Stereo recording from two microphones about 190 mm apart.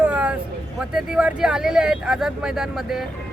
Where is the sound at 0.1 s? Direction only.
5° right (ahead or behind).